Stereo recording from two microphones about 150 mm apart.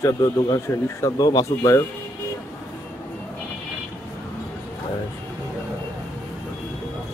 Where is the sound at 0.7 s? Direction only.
25° left (ahead or behind).